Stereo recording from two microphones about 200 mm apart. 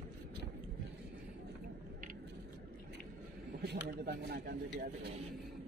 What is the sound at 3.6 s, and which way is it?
Speech, 55° right (ahead or behind).